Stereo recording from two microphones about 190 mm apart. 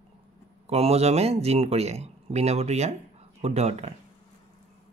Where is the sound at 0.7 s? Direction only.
35° right (ahead or behind).